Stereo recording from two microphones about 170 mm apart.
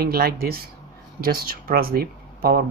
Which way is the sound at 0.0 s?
65° right (ahead or behind).